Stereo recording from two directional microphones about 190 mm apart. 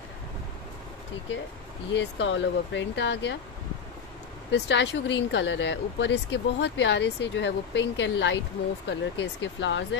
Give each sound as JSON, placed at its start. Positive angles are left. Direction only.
{"t": 2.0, "sound": "speech", "side_deg": 70}
{"t": 4.5, "sound": "speech", "side_deg": 70}